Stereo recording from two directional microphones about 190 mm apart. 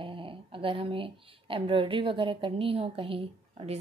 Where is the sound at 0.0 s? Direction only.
25° right (ahead or behind).